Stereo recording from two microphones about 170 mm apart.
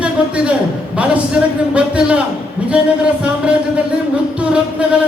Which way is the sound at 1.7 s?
5° right (ahead or behind).